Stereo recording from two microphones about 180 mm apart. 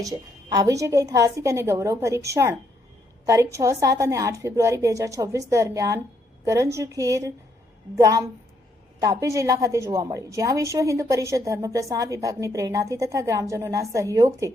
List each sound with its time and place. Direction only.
0.0 s a woman's voice: 20° right (ahead or behind)